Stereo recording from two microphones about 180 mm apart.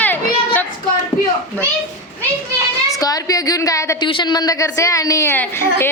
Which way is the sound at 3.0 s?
20° left (ahead or behind).